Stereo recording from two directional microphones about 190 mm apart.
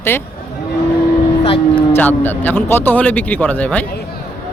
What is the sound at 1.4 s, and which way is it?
Speech, 30° left (ahead or behind).